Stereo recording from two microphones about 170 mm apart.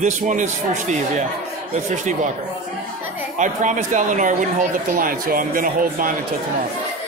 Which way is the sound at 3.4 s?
50° right (ahead or behind).